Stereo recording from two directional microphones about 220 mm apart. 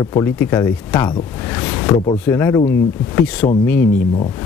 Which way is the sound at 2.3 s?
10° left (ahead or behind).